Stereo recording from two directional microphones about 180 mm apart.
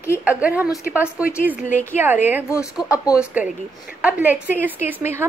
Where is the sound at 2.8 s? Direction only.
20° left (ahead or behind).